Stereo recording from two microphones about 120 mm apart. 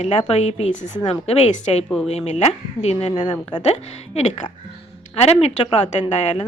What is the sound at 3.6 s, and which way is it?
Speech, 65° left (ahead or behind).